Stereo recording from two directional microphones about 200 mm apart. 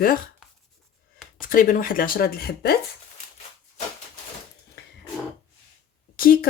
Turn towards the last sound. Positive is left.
turn(degrees=45)  # may be behind; listen again after turning